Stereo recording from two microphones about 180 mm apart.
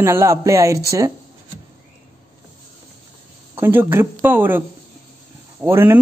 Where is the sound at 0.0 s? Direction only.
15° right (ahead or behind).